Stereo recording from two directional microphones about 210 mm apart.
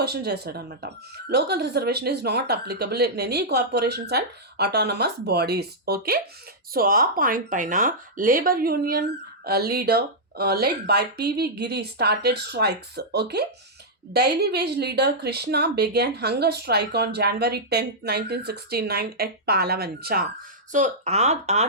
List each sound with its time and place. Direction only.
0.0 s speech: 50° right (ahead or behind)
20.7 s speech: 35° right (ahead or behind)